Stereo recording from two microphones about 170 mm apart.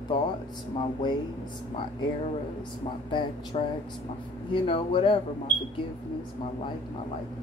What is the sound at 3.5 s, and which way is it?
Speech, 35° left (ahead or behind).